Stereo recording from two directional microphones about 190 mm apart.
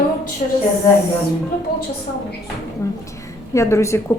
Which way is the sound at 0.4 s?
40° left (ahead or behind).